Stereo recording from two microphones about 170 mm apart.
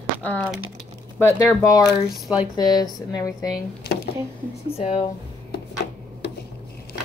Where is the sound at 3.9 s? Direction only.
70° left (ahead or behind).